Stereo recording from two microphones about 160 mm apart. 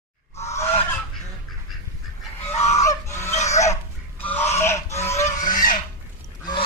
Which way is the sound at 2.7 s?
20° left (ahead or behind).